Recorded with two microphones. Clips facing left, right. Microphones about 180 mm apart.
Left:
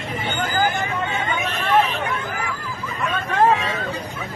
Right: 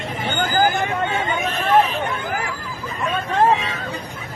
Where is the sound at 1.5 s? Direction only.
40° right (ahead or behind).